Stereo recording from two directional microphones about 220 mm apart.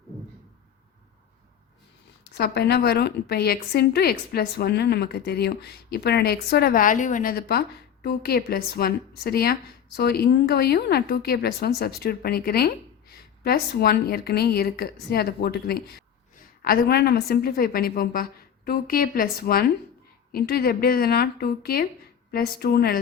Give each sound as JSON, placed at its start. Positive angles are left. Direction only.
{"t": 2.3, "sound": "a woman's voice", "side_deg": 45}